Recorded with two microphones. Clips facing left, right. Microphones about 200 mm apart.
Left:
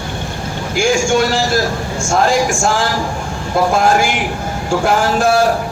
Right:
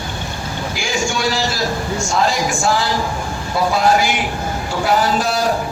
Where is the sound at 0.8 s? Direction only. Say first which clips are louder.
Left 9 dB; 50° left (ahead or behind).